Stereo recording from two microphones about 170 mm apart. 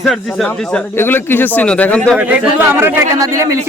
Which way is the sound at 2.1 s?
10° right (ahead or behind).